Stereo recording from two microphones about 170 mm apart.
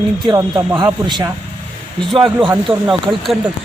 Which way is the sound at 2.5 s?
5° right (ahead or behind).